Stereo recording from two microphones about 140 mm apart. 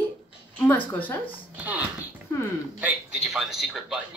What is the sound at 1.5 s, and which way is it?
Speech, 10° right (ahead or behind).